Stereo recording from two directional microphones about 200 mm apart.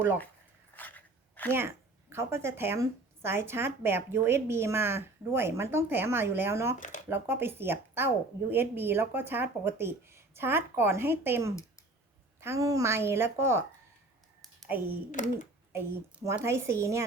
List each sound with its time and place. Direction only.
0.8 s a sound: 10° left (ahead or behind)
1.5 s a woman's voice: 10° right (ahead or behind)
6.7 s speech: 40° left (ahead or behind)
7.1 s a woman's voice: 10° right (ahead or behind)
15.1 s speech: 40° left (ahead or behind)
15.7 s a woman's voice: 10° right (ahead or behind)